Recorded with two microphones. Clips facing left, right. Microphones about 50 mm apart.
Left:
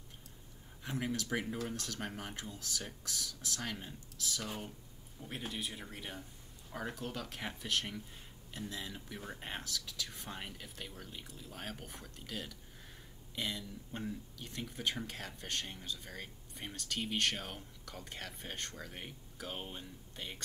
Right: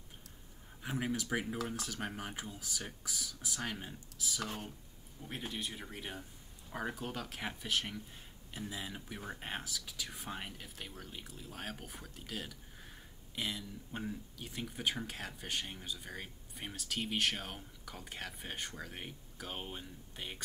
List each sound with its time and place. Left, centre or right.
0.8 s speech: centre